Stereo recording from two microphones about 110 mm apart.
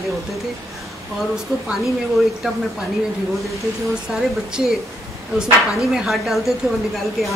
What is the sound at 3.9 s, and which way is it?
Speech, 5° right (ahead or behind).